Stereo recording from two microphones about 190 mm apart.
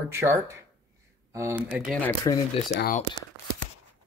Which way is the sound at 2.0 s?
15° left (ahead or behind).